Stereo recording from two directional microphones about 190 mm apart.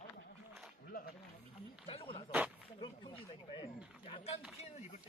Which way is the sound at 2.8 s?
25° left (ahead or behind).